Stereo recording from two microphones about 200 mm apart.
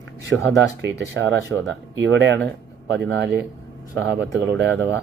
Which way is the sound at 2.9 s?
60° right (ahead or behind).